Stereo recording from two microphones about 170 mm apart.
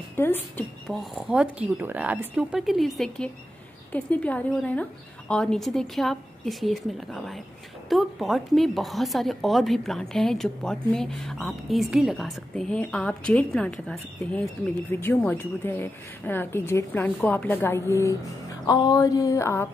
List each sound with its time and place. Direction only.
0.1 s a woman's voice: 10° left (ahead or behind)
0.8 s a woman's voice: centre (ahead or behind); by 18.1 s 15° left (ahead or behind)
18.7 s a sound: 20° left (ahead or behind)